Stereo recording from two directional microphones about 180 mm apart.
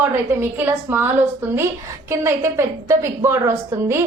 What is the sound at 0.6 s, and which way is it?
Speech, 10° right (ahead or behind).